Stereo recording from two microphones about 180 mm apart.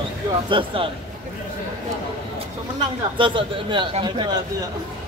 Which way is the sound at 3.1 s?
25° right (ahead or behind).